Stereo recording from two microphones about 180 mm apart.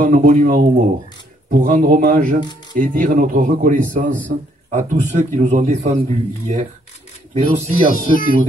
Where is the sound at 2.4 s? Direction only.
25° left (ahead or behind).